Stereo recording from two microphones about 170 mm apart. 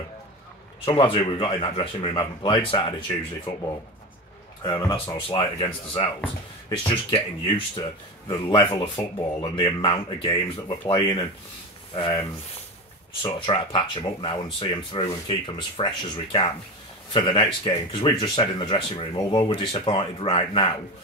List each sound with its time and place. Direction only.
0.8 s speech: 30° left (ahead or behind)
4.6 s speech: 25° left (ahead or behind)